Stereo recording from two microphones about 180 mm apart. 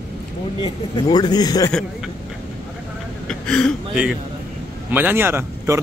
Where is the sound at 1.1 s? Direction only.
20° left (ahead or behind).